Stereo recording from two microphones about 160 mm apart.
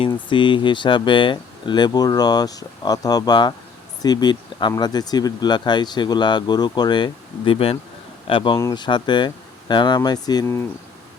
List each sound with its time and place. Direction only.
0.0 s a man's voice: 30° left (ahead or behind)